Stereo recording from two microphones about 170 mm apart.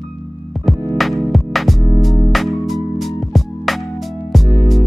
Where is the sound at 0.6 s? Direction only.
Centre (ahead or behind).